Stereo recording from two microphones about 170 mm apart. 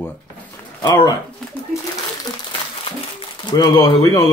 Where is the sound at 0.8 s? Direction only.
25° left (ahead or behind).